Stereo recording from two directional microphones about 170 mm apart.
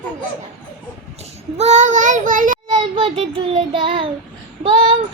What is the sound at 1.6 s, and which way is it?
A child's voice, 45° right (ahead or behind).